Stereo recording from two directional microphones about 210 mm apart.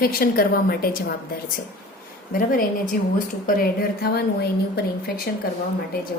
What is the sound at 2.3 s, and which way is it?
A woman's voice, 40° left (ahead or behind).